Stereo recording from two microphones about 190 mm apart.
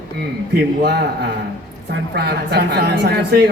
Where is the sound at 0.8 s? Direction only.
60° right (ahead or behind).